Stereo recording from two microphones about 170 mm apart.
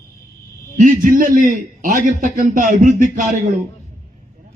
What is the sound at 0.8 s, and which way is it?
A man's voice, 50° right (ahead or behind).